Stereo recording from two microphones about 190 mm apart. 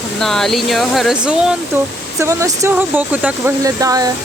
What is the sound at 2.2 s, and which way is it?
Speech, 15° right (ahead or behind).